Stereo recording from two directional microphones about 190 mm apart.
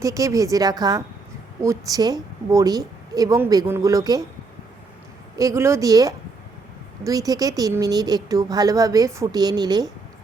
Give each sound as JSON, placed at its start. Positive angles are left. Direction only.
{"t": 0.0, "sound": "a woman's voice", "side_deg": -15}
{"t": 5.4, "sound": "a woman's voice", "side_deg": -15}